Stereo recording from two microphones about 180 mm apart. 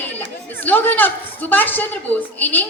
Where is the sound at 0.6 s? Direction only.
10° left (ahead or behind).